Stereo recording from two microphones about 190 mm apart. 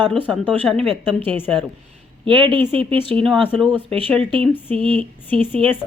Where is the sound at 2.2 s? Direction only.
25° right (ahead or behind).